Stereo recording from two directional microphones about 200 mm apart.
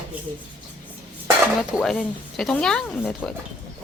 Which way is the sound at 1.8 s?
Centre (ahead or behind).